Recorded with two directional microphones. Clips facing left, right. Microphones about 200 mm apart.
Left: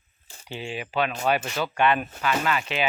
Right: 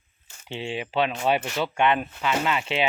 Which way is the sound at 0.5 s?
25° right (ahead or behind).